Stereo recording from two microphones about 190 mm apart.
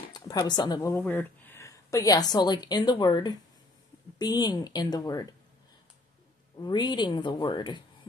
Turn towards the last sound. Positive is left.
turn(degrees=25)  # may be behind; listen again after turning